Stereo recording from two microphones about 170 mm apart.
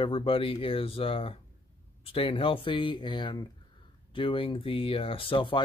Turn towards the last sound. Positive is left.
turn(degrees=30)  # may be behind; listen again after turning